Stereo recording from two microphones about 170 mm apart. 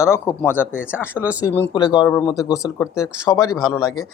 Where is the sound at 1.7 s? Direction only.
25° left (ahead or behind).